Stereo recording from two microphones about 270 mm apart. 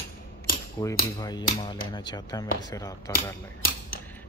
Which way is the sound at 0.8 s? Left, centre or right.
Centre.